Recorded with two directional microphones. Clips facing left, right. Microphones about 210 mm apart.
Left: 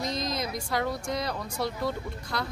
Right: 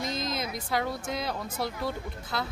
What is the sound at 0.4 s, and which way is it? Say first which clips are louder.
Speech: left 1 dB; centre (ahead or behind).